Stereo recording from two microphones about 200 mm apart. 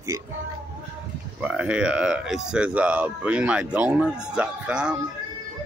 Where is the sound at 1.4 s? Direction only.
5° right (ahead or behind).